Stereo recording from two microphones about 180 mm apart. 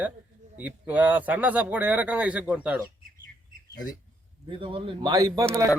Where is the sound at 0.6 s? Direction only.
10° right (ahead or behind).